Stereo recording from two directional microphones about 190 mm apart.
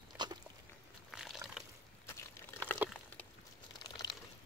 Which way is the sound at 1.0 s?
Centre (ahead or behind).